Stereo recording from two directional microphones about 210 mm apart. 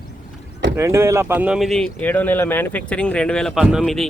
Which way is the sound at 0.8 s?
15° right (ahead or behind).